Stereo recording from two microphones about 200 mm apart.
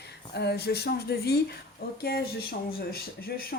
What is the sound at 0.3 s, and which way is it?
A woman's voice, 55° left (ahead or behind).